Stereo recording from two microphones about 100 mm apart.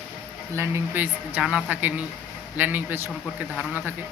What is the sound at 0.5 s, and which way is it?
Speech, 25° right (ahead or behind).